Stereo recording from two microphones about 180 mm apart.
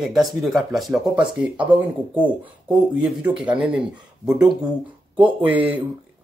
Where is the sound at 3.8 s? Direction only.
5° right (ahead or behind).